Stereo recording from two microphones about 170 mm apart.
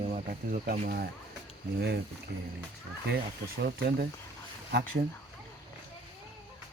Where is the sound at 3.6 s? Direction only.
70° right (ahead or behind).